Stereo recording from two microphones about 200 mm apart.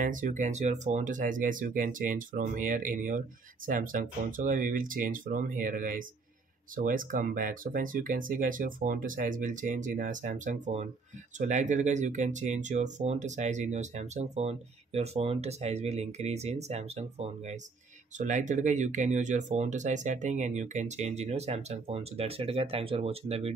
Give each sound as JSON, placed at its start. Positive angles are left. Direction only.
{"t": 0.0, "sound": "speech", "side_deg": -40}